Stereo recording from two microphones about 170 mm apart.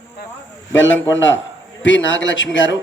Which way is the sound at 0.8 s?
90° left.